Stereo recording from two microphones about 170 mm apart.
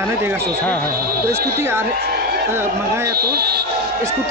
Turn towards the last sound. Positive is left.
turn(degrees=-70)  # may be behind; listen again after turning